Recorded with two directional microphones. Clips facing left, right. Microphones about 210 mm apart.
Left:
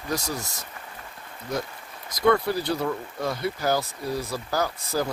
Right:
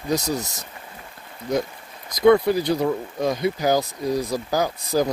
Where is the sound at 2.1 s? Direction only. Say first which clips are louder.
Right 6 dB; 15° right (ahead or behind).